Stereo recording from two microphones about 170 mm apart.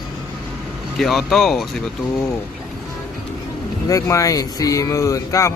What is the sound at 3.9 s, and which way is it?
Speech, 20° left (ahead or behind).